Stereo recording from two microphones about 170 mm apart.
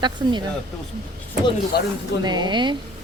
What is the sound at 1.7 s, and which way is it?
Speech, 65° left (ahead or behind).